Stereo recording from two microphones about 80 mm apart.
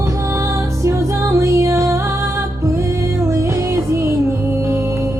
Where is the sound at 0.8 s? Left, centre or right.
Right.